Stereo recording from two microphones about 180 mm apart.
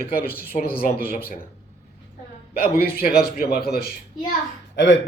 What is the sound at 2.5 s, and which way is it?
A man's voice, 55° left (ahead or behind).